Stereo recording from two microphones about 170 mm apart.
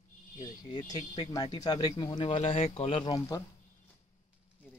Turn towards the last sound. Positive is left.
turn(degrees=25)  # may be behind; listen again after turning